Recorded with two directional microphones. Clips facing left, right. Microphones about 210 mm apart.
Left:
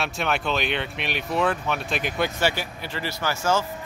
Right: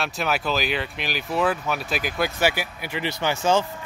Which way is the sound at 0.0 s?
Centre (ahead or behind).